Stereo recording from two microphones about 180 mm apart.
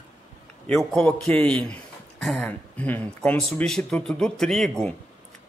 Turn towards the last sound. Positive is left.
turn(degrees=0)  # may be behind; listen again after turning